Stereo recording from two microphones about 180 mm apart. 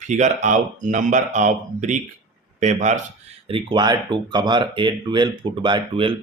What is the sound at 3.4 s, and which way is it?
Speech, 30° right (ahead or behind).